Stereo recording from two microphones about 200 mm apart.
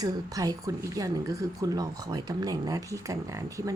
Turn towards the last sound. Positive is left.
turn(degrees=-15)  # may be behind; listen again after turning